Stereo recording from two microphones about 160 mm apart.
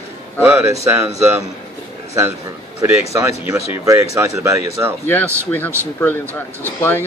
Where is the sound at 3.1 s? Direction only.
20° right (ahead or behind).